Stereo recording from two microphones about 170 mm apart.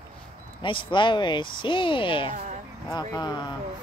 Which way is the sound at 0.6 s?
30° left (ahead or behind).